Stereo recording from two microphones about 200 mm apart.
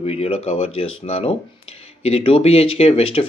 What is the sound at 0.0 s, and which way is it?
Speech, 30° left (ahead or behind).